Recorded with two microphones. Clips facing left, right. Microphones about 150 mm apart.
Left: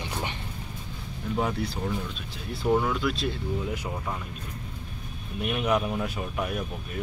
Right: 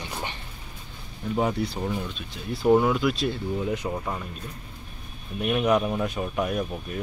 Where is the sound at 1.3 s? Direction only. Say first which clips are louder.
Right 3 dB; centre (ahead or behind).